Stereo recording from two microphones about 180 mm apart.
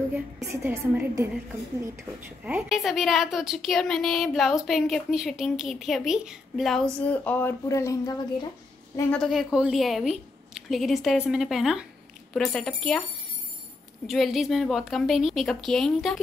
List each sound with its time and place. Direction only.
0.5 s a woman's voice: 15° right (ahead or behind); by 8.5 s 20° left (ahead or behind)
9.1 s a woman's voice: centre (ahead or behind)
14.0 s a woman's voice: centre (ahead or behind)